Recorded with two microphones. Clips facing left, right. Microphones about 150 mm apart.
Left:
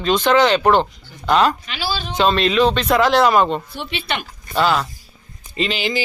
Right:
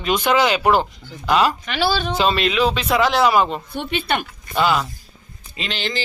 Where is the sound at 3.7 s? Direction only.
50° right (ahead or behind).